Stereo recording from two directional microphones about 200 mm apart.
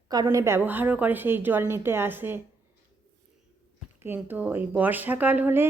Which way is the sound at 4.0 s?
10° right (ahead or behind).